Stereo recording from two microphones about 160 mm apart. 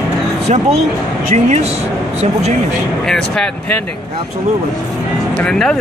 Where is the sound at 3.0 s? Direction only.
5° left (ahead or behind).